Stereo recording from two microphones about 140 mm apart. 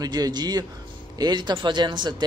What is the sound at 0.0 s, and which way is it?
Speech, 30° right (ahead or behind).